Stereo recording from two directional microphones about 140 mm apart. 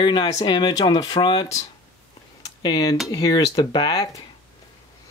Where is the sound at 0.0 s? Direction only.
35° left (ahead or behind).